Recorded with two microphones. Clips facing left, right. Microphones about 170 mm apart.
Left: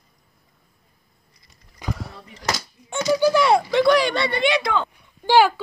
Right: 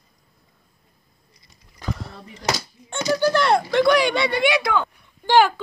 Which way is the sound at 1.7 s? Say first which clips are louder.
Even; 10° left (ahead or behind).